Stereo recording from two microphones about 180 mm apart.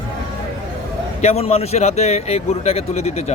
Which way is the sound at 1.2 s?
35° left (ahead or behind).